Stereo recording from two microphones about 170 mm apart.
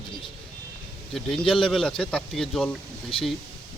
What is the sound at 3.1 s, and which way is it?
Speech, 30° left (ahead or behind).